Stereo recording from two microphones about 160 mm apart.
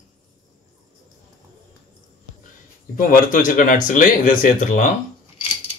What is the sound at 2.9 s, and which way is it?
Speech, 55° left (ahead or behind).